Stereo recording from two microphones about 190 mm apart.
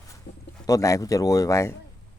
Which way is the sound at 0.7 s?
15° left (ahead or behind).